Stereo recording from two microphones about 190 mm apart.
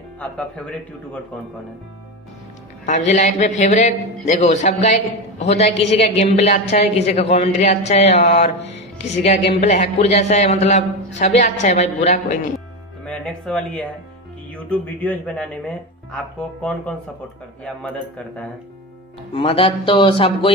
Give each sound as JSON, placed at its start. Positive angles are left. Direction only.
{"t": 0.2, "sound": "speech", "side_deg": 5}
{"t": 3.1, "sound": "a man's voice", "side_deg": 35}
{"t": 12.5, "sound": "music", "side_deg": 5}
{"t": 14.5, "sound": "speech", "side_deg": 5}
{"t": 19.3, "sound": "speech", "side_deg": 30}